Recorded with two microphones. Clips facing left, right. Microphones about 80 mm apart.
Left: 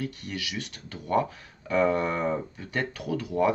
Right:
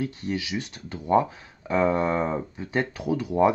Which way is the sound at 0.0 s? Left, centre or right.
Right.